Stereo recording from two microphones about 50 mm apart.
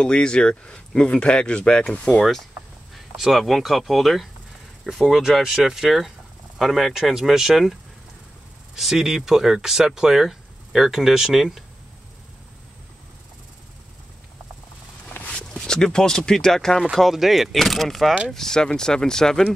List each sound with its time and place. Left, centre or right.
0.0 s speech: centre
2.9 s speech: centre
8.7 s speech: centre
15.2 s speech: centre
16.9 s speech: centre